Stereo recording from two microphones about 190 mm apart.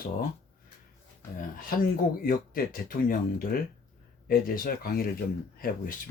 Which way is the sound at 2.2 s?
45° left (ahead or behind).